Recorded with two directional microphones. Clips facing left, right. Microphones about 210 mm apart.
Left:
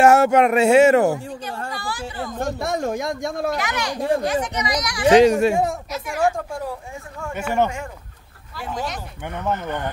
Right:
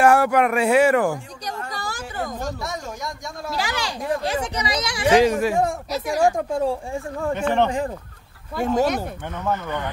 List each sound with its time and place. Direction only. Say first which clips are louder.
0.0 s speech: left 3 dB; 25° left (ahead or behind)
1.7 s a woman's voice: left 2 dB; 40° right (ahead or behind)
2.4 s a man's voice: left 6 dB; 55° left (ahead or behind)
3.5 s speech: left 2 dB; 30° right (ahead or behind)
5.0 s speech: left 4 dB; 25° left (ahead or behind)
5.9 s speech: right 4 dB; 35° right (ahead or behind)
6.3 s speech: right 6 dB; 25° right (ahead or behind)
7.3 s speech: even; 5° left (ahead or behind)
8.5 s speech: right 9 dB; 45° right (ahead or behind)
9.3 s speech: left 1 dB; 15° left (ahead or behind)